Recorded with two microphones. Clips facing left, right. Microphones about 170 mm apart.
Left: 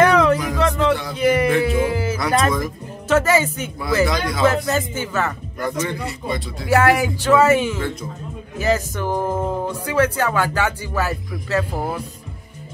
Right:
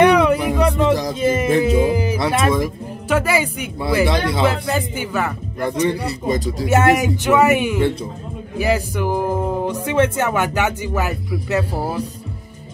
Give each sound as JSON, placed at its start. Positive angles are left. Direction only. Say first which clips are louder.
{"t": 0.0, "sound": "a sound", "louder": "right 2 dB", "side_deg": -15}
{"t": 0.6, "sound": "music", "louder": "right 2 dB", "side_deg": -15}
{"t": 1.8, "sound": "speech", "louder": "right 3 dB", "side_deg": -15}
{"t": 4.0, "sound": "speech", "louder": "right 1 dB", "side_deg": -30}
{"t": 4.6, "sound": "speech", "louder": "even", "side_deg": -15}
{"t": 5.6, "sound": "speech", "louder": "right 5 dB", "side_deg": -30}
{"t": 6.7, "sound": "speech", "louder": "even", "side_deg": -25}
{"t": 9.8, "sound": "speech", "louder": "right 1 dB", "side_deg": -25}